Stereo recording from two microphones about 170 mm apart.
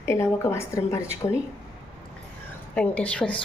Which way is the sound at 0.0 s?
15° left (ahead or behind).